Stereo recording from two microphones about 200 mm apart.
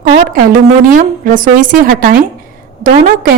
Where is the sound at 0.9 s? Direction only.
45° right (ahead or behind).